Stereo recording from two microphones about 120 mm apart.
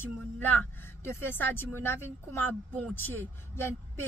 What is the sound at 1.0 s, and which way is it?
A woman's voice, 20° left (ahead or behind).